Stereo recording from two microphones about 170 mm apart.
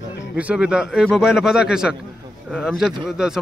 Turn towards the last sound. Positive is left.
turn(degrees=-5)  # may be behind; listen again after turning